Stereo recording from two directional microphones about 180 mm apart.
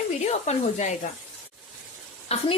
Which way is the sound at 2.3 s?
35° left (ahead or behind).